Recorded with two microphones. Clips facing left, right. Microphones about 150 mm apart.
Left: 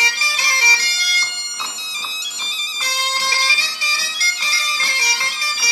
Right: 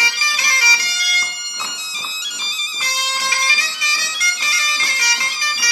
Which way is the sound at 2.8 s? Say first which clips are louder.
Left 1 dB; 30° left (ahead or behind).